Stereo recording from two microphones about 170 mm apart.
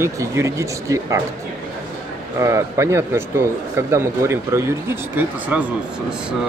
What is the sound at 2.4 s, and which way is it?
Speech, 15° right (ahead or behind).